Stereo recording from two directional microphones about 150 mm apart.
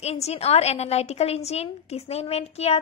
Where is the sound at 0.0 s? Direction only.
45° left (ahead or behind).